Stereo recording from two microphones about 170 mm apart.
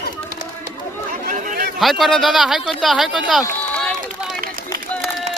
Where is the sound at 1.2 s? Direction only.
55° right (ahead or behind).